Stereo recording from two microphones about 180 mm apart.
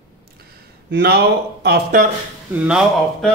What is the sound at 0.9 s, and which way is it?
Speech, 65° right (ahead or behind).